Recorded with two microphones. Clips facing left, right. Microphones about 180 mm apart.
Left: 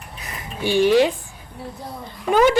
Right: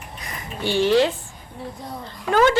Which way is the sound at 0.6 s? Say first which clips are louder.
Left 2 dB; 15° left (ahead or behind).